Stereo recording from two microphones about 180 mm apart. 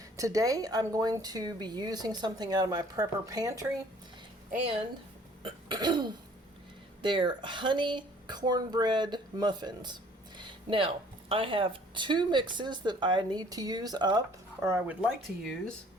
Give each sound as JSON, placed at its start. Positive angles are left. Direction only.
{"t": 0.2, "sound": "speech", "side_deg": -20}
{"t": 5.4, "sound": "throat clearing", "side_deg": -25}
{"t": 7.0, "sound": "speech", "side_deg": -25}